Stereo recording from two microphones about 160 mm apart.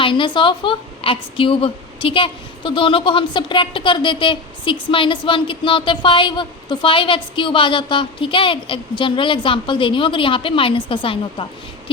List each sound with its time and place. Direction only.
0.0 s a woman's voice: 30° left (ahead or behind)